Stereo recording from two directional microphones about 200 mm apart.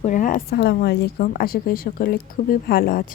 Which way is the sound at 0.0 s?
40° left (ahead or behind).